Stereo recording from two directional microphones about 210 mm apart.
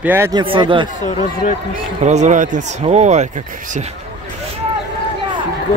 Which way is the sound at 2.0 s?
35° right (ahead or behind).